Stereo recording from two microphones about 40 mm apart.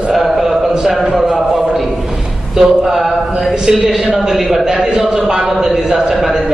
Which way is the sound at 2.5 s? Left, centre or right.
Centre.